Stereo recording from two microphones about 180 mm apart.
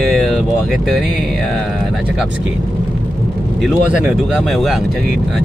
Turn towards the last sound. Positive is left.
turn(degrees=0)  # may be behind; listen again after turning